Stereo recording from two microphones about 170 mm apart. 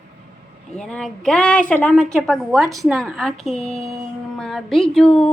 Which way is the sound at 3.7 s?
20° right (ahead or behind).